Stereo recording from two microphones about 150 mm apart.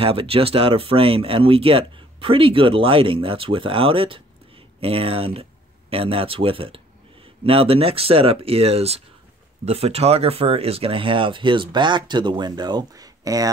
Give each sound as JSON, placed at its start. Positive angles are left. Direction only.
{"t": 0.0, "sound": "speech", "side_deg": -40}